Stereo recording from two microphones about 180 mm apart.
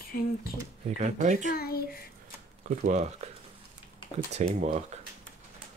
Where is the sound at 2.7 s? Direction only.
40° right (ahead or behind).